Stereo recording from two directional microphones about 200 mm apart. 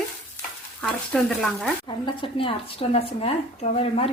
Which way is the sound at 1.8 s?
25° left (ahead or behind).